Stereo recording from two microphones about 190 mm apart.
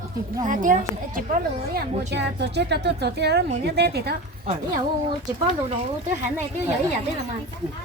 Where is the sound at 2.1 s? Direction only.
65° right (ahead or behind).